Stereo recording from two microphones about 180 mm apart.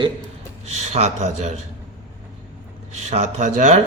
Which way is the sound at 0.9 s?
40° right (ahead or behind).